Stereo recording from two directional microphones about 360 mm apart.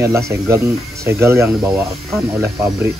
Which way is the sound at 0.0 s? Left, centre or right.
Centre.